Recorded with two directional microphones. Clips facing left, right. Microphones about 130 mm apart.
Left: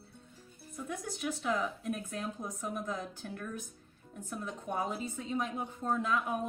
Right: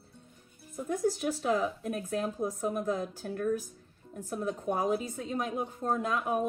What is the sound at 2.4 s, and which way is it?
A man's voice, 55° right (ahead or behind).